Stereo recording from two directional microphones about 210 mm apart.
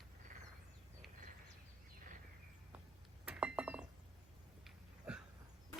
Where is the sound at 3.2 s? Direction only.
5° right (ahead or behind).